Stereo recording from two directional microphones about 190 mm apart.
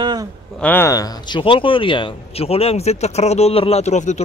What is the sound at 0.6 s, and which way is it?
Speech, 10° left (ahead or behind).